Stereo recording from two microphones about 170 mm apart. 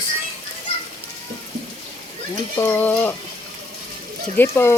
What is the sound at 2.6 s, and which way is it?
Speech, 10° left (ahead or behind).